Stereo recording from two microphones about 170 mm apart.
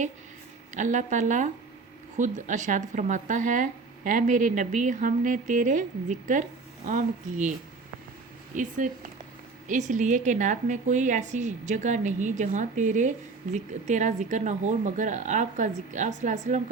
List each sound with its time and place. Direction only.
0.7 s a woman's voice: 45° right (ahead or behind)
8.5 s a woman's voice: 50° right (ahead or behind)